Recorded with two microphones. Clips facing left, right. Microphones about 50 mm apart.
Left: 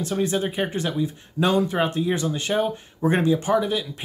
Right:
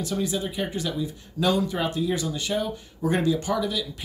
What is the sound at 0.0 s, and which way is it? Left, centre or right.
Speech, left.